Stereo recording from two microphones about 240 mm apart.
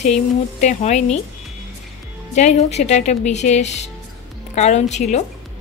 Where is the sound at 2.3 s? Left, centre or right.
Left.